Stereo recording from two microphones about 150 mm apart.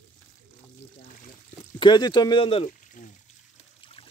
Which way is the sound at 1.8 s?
30° left (ahead or behind).